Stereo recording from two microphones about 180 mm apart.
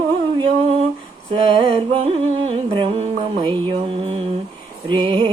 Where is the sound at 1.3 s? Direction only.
30° right (ahead or behind).